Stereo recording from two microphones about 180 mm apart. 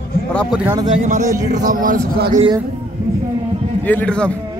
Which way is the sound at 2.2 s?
25° right (ahead or behind).